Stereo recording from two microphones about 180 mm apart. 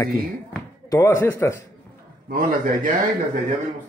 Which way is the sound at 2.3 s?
45° right (ahead or behind).